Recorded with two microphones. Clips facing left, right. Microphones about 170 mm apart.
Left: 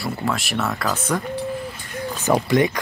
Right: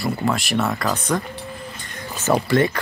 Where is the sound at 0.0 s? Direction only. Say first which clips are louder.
Right 3 dB; centre (ahead or behind).